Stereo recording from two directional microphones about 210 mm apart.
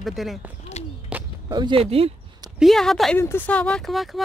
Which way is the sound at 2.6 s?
Centre (ahead or behind).